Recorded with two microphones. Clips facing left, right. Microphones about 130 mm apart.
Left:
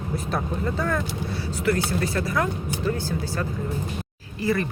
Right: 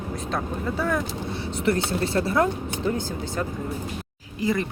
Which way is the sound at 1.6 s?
25° right (ahead or behind).